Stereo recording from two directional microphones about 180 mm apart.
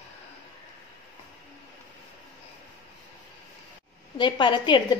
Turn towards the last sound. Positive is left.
turn(degrees=25)  # may be behind; listen again after turning